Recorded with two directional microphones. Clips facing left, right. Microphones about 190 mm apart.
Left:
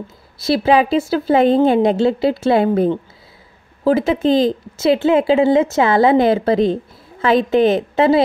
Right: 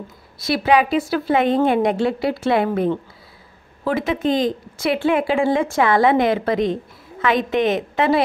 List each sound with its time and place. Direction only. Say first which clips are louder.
0.4 s speech: left 3 dB; 25° left (ahead or behind)